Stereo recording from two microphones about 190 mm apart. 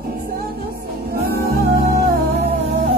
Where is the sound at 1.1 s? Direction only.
55° right (ahead or behind).